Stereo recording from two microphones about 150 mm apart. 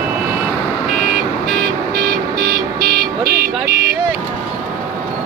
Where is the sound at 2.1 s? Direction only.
80° right.